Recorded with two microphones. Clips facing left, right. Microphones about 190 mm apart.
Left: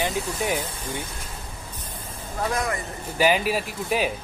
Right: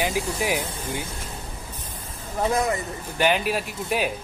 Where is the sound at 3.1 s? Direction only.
5° left (ahead or behind).